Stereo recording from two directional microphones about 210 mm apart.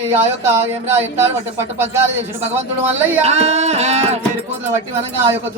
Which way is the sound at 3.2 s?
30° right (ahead or behind).